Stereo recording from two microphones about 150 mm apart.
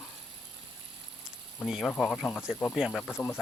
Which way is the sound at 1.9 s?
5° left (ahead or behind).